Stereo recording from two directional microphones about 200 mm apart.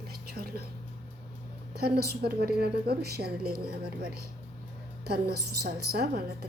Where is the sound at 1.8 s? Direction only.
50° right (ahead or behind).